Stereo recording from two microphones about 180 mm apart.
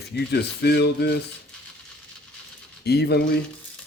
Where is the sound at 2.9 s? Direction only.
65° left (ahead or behind).